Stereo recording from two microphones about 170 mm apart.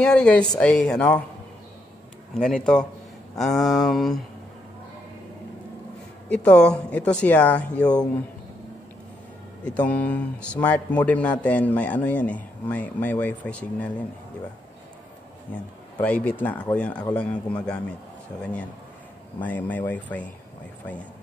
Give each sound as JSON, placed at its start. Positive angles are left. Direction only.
{"t": 0.0, "sound": "a sound", "side_deg": 5}
{"t": 0.6, "sound": "a man's voice", "side_deg": 0}
{"t": 2.6, "sound": "a sound", "side_deg": 5}
{"t": 6.2, "sound": "a man's voice", "side_deg": 5}
{"t": 9.7, "sound": "a man's voice", "side_deg": 10}
{"t": 16.0, "sound": "a man's voice", "side_deg": 10}